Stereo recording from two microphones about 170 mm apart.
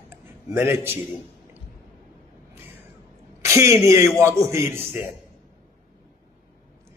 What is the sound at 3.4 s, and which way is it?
A man's voice, 15° right (ahead or behind).